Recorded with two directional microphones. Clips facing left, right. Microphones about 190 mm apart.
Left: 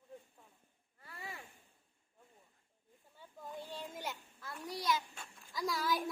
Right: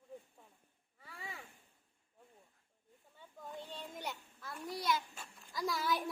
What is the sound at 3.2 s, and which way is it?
A child's voice, 5° left (ahead or behind).